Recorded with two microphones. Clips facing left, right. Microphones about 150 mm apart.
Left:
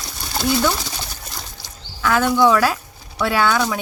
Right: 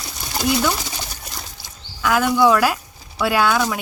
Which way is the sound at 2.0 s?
5° right (ahead or behind).